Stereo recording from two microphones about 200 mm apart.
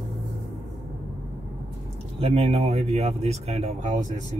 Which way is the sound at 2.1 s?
30° right (ahead or behind).